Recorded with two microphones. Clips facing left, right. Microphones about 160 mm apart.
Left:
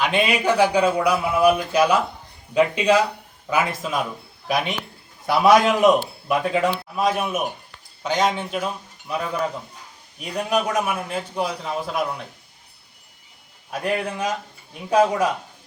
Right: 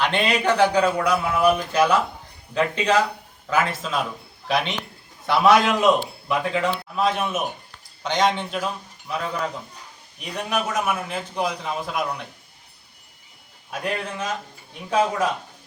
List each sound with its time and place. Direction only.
0.0 s a man's voice: 10° left (ahead or behind)
10.2 s a man's voice: 10° left (ahead or behind)
14.8 s a man's voice: 10° left (ahead or behind)